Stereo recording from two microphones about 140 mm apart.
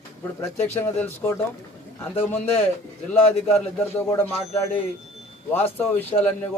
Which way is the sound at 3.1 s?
10° left (ahead or behind).